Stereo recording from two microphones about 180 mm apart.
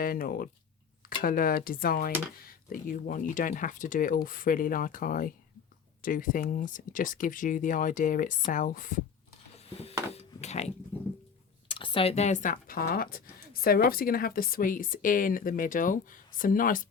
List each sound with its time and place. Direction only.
0.0 s speech: 55° left (ahead or behind)
9.6 s a sound: 35° left (ahead or behind)
10.1 s speech: 35° left (ahead or behind)
11.7 s speech: 30° left (ahead or behind); by 16.9 s 50° left (ahead or behind)